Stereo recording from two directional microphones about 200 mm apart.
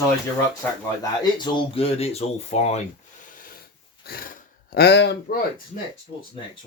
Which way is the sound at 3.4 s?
45° left (ahead or behind).